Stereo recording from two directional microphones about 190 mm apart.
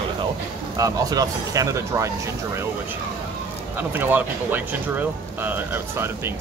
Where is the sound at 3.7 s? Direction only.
10° right (ahead or behind).